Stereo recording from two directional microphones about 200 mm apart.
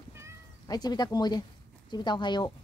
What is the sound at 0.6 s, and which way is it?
Speech, 20° left (ahead or behind).